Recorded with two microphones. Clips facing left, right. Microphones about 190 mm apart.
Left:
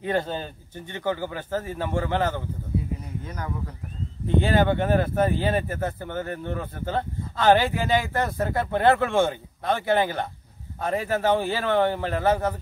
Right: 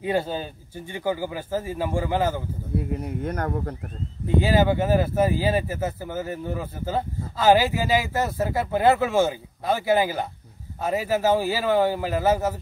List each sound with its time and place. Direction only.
0.0 s speech: 10° right (ahead or behind)
2.8 s speech: 60° right (ahead or behind)
4.4 s speech: 5° right (ahead or behind)